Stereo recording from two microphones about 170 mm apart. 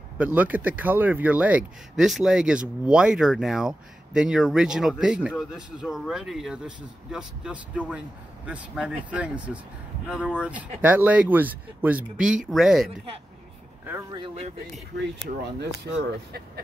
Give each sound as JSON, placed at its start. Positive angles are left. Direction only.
{"t": 0.2, "sound": "speech", "side_deg": -10}
{"t": 15.4, "sound": "speech", "side_deg": -75}